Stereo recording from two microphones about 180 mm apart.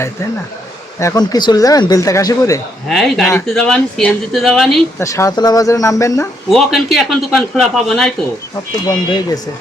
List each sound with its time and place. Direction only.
0.9 s speech: 20° left (ahead or behind)
2.9 s speech: centre (ahead or behind)
4.9 s speech: 15° left (ahead or behind)
6.5 s speech: centre (ahead or behind)
8.9 s speech: 25° left (ahead or behind)